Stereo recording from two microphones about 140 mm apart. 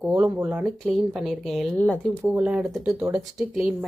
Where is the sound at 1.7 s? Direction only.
10° left (ahead or behind).